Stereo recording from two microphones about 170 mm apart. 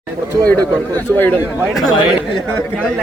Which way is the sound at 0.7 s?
10° left (ahead or behind).